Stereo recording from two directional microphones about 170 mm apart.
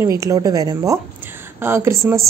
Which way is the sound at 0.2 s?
20° right (ahead or behind).